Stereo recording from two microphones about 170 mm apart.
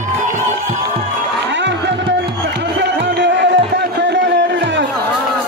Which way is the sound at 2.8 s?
90° right.